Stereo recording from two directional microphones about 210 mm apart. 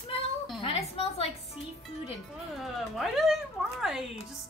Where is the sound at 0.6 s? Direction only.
30° left (ahead or behind).